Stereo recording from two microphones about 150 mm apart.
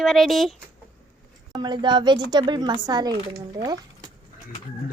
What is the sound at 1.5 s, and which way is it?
Speech, 30° right (ahead or behind).